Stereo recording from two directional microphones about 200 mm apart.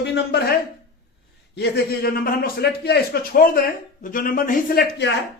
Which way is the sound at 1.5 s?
55° left (ahead or behind).